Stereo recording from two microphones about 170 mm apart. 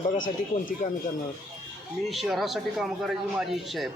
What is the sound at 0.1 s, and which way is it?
Speech, 50° left (ahead or behind).